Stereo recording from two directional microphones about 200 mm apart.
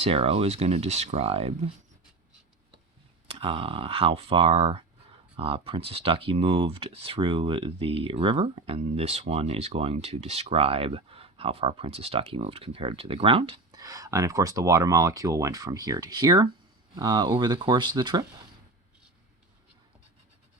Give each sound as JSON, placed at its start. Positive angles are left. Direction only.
{"t": 0.0, "sound": "speech", "side_deg": -30}
{"t": 3.2, "sound": "speech", "side_deg": -25}